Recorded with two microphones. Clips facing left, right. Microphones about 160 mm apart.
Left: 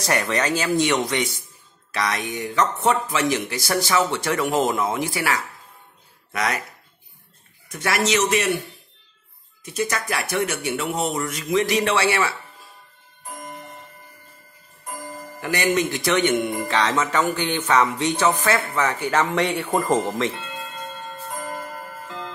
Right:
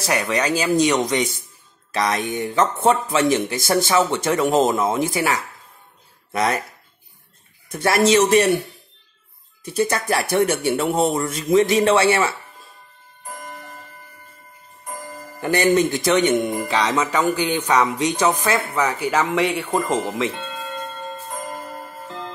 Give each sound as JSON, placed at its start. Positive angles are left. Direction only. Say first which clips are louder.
{"t": 0.0, "sound": "music", "louder": "right 1 dB", "side_deg": -5}
{"t": 0.8, "sound": "speech", "louder": "right 3 dB", "side_deg": -20}
{"t": 7.7, "sound": "speech", "louder": "right 6 dB", "side_deg": -30}
{"t": 9.7, "sound": "speech", "louder": "right 5 dB", "side_deg": -30}
{"t": 15.4, "sound": "speech", "louder": "right 5 dB", "side_deg": -30}
{"t": 16.5, "sound": "music", "louder": "right 1 dB", "side_deg": -15}